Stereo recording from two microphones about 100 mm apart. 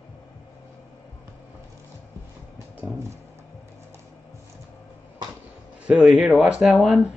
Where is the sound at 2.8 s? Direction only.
15° right (ahead or behind).